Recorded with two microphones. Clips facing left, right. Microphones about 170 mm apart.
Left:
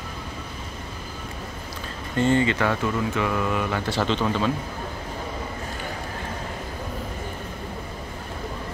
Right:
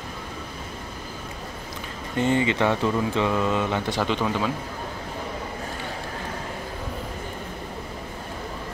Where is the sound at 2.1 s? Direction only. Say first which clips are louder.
Left 1 dB; 15° right (ahead or behind).